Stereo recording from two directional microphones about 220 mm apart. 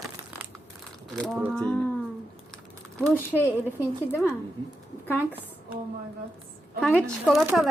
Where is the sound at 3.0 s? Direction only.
10° left (ahead or behind).